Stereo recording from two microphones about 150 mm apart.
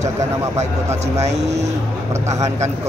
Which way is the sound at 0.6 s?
45° right (ahead or behind).